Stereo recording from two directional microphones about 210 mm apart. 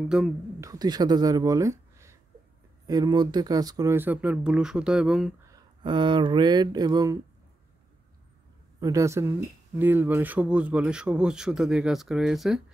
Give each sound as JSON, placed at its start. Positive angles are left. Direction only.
{"t": 0.1, "sound": "speech", "side_deg": -5}
{"t": 0.6, "sound": "speech", "side_deg": -20}
{"t": 5.5, "sound": "speech", "side_deg": -20}
{"t": 8.7, "sound": "speech", "side_deg": -15}